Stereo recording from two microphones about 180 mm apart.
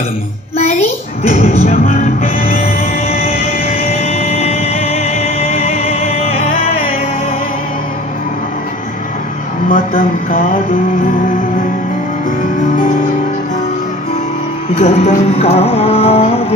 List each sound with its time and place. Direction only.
1.3 s music: 35° left (ahead or behind)
3.1 s music: 35° left (ahead or behind)
9.6 s speech: 50° left (ahead or behind)
14.8 s music: 35° left (ahead or behind)